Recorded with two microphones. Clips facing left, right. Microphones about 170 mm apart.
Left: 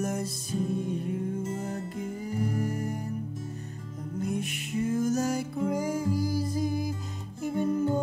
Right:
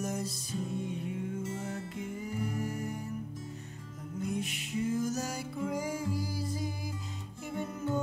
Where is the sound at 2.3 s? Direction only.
40° left (ahead or behind).